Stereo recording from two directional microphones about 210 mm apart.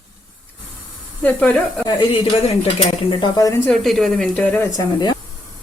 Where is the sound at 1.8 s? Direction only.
20° left (ahead or behind).